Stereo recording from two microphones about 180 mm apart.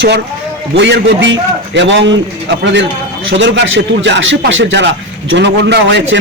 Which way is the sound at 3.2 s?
90° right.